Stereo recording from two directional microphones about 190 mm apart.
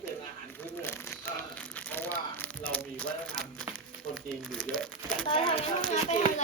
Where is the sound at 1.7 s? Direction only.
10° left (ahead or behind).